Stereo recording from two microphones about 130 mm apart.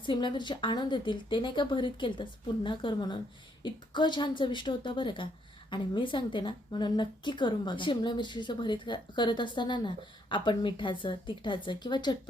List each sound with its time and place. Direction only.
0.0 s a woman's voice: 40° left (ahead or behind)